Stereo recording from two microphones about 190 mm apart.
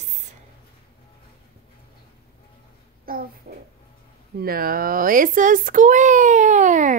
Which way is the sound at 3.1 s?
50° right (ahead or behind).